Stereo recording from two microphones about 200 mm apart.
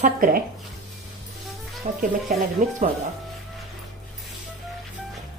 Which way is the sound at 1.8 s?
35° right (ahead or behind).